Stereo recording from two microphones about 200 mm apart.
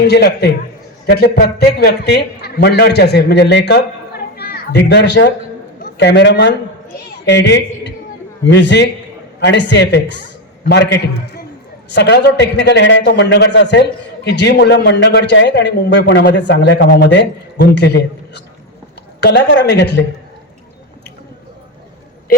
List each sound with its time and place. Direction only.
0.1 s a man's voice: 55° left (ahead or behind)